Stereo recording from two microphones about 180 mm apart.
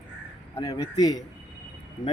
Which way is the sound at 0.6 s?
20° left (ahead or behind).